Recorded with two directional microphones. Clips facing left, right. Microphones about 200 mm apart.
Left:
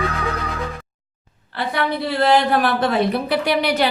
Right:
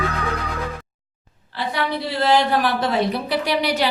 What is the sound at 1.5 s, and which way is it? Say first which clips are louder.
A woman's voice: left 2 dB; 55° left (ahead or behind).